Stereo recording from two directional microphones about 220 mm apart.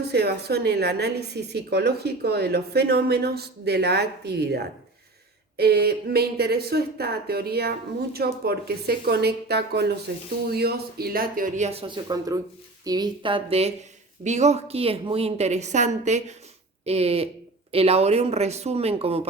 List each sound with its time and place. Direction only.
0.0 s a woman's voice: 45° right (ahead or behind); by 19.3 s 25° right (ahead or behind)